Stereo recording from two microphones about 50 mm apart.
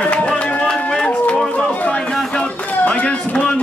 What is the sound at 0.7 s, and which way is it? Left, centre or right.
Music, centre.